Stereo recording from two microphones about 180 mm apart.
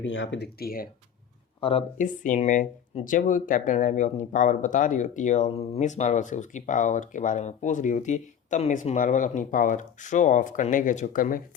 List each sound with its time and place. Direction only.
0.0 s speech: 90° left; by 0.9 s 55° left (ahead or behind)
2.0 s speech: 45° left (ahead or behind)